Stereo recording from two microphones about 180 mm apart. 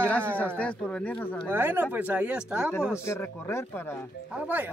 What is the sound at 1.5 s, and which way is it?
A man's voice, 10° right (ahead or behind).